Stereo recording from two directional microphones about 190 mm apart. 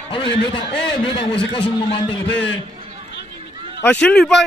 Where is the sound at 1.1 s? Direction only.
25° left (ahead or behind).